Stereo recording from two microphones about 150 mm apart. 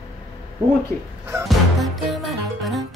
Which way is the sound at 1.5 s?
Centre (ahead or behind).